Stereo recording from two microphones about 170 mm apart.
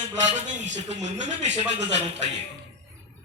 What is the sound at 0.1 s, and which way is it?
Speech, 45° right (ahead or behind).